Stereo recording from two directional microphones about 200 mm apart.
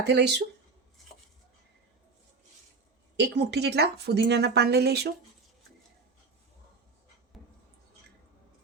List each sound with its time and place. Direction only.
0.0 s a woman's voice: 55° right (ahead or behind)
3.2 s a woman's voice: 55° right (ahead or behind)
7.3 s a sound: centre (ahead or behind)